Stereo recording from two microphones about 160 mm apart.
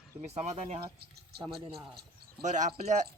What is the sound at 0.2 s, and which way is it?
Speech, 45° right (ahead or behind).